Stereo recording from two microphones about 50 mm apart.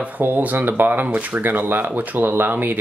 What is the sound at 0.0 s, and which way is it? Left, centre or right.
Speech, right.